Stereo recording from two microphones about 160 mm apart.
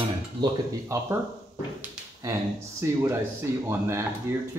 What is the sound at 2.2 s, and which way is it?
Speech, 20° right (ahead or behind).